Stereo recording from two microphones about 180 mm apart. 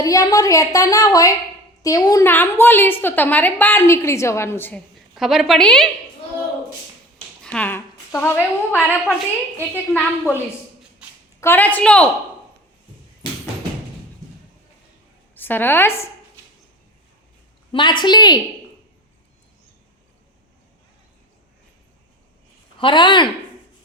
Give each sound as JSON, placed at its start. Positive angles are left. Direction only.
{"t": 0.0, "sound": "a woman's voice", "side_deg": 20}
{"t": 4.9, "sound": "a woman's voice", "side_deg": 0}
{"t": 7.4, "sound": "a woman's voice", "side_deg": 5}
{"t": 15.4, "sound": "a woman's voice", "side_deg": 10}
{"t": 17.7, "sound": "a woman's voice", "side_deg": 25}
{"t": 22.8, "sound": "a woman's voice", "side_deg": 25}